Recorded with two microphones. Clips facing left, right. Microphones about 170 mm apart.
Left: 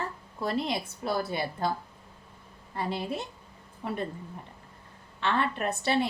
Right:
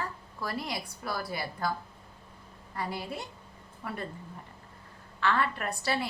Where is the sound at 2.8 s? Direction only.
25° left (ahead or behind).